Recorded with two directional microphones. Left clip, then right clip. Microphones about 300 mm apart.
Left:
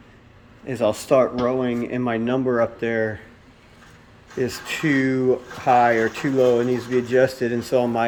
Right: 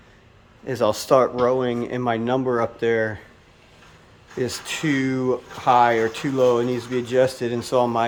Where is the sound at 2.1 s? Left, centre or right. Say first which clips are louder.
Right 2 dB; right.